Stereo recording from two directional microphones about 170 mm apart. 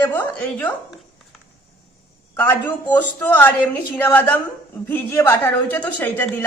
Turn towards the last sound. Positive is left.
turn(degrees=10)  # may be behind; listen again after turning